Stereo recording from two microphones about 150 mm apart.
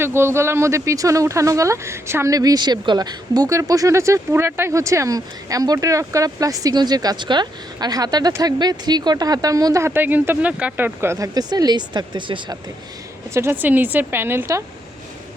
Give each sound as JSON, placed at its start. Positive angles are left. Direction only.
{"t": 0.0, "sound": "speech", "side_deg": -15}
{"t": 13.3, "sound": "a woman's voice", "side_deg": -15}